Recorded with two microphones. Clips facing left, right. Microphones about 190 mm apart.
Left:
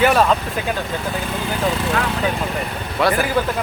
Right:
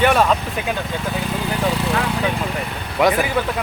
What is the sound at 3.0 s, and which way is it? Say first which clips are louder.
Speech: right 2 dB; 15° right (ahead or behind).